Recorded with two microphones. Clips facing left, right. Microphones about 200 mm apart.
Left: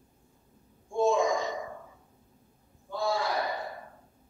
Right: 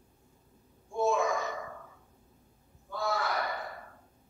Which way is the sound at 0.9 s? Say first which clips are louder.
Left 3 dB; 15° left (ahead or behind).